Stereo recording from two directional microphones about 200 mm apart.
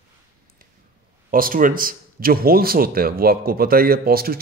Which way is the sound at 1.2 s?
45° right (ahead or behind).